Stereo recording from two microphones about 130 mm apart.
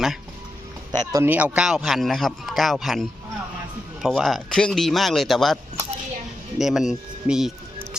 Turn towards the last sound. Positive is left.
turn(degrees=-5)  # may be behind; listen again after turning